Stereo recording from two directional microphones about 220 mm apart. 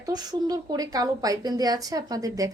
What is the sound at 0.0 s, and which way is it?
A woman's voice, 15° right (ahead or behind).